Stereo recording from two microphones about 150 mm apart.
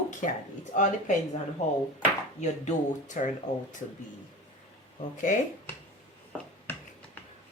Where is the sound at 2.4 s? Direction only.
55° left (ahead or behind).